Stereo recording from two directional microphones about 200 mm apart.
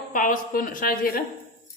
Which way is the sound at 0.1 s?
45° left (ahead or behind).